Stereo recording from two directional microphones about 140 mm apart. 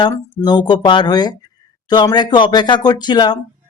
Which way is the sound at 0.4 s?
30° left (ahead or behind).